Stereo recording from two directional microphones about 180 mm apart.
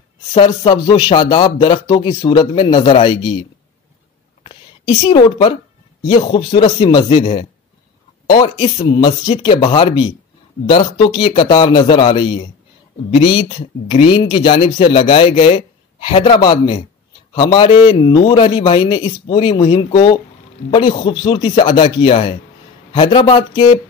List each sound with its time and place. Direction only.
0.3 s speech: 30° left (ahead or behind)
4.4 s a sound: 30° left (ahead or behind)
6.0 s speech: 25° left (ahead or behind)